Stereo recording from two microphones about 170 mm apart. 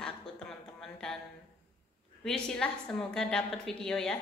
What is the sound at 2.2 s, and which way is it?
A woman's voice, 5° left (ahead or behind).